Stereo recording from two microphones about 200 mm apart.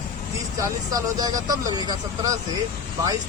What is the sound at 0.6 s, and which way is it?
Speech, 20° right (ahead or behind).